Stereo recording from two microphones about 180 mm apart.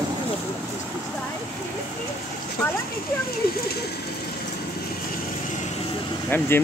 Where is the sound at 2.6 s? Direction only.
5° left (ahead or behind).